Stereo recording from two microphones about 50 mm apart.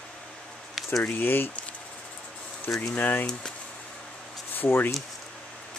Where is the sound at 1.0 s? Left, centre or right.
Left.